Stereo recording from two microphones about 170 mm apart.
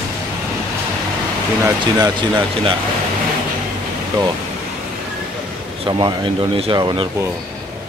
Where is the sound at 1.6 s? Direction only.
25° right (ahead or behind).